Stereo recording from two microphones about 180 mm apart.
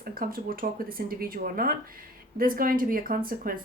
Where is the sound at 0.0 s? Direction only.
55° right (ahead or behind).